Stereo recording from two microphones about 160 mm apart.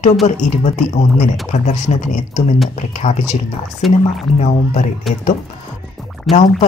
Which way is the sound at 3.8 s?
Centre (ahead or behind).